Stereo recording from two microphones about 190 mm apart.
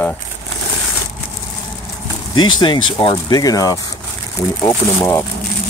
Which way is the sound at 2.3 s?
25° left (ahead or behind).